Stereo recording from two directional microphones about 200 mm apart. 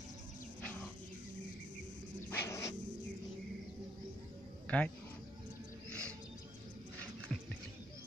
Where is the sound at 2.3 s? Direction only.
15° left (ahead or behind).